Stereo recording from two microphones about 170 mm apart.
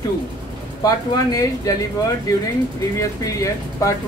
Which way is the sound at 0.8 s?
20° left (ahead or behind).